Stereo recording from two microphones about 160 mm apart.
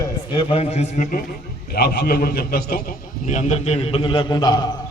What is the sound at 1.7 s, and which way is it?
A man's voice, 75° left (ahead or behind).